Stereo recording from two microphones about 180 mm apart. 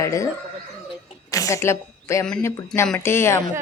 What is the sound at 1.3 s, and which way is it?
A woman's voice, 15° left (ahead or behind).